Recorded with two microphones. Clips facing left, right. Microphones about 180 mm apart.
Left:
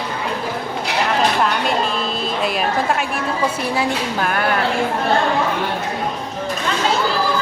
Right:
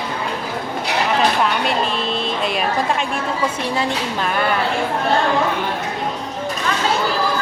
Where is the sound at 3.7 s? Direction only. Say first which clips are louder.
Left 1 dB; 5° left (ahead or behind).